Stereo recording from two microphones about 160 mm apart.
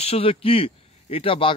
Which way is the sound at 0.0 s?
40° left (ahead or behind).